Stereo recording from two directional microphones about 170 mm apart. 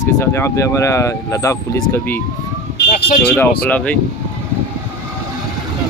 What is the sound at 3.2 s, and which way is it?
Speech, 5° left (ahead or behind).